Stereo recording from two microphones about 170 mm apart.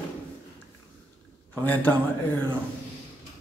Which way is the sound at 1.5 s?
10° left (ahead or behind).